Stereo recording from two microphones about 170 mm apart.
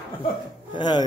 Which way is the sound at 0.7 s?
25° left (ahead or behind).